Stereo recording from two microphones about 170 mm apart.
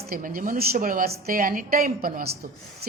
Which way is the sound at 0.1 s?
55° right (ahead or behind).